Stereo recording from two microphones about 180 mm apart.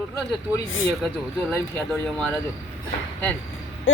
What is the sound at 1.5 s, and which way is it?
Speech, 5° left (ahead or behind).